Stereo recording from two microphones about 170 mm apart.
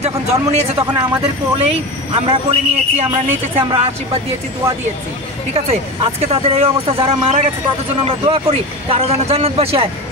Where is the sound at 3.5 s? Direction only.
35° right (ahead or behind).